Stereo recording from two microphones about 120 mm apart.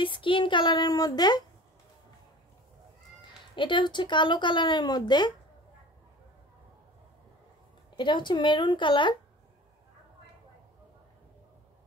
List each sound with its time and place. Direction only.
0.0 s speech: 45° left (ahead or behind)
3.2 s speech: 45° left (ahead or behind)
7.9 s speech: 40° left (ahead or behind)